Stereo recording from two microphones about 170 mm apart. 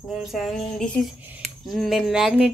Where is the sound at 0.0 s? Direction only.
Centre (ahead or behind).